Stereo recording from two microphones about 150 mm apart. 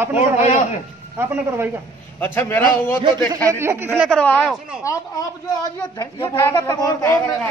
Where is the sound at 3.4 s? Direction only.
15° right (ahead or behind).